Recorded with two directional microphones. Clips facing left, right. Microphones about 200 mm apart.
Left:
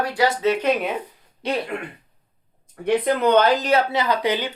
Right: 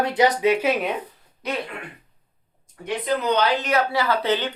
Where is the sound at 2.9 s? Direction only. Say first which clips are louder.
Left 5 dB; 55° left (ahead or behind).